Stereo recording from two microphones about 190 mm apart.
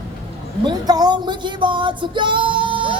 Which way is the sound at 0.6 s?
20° right (ahead or behind).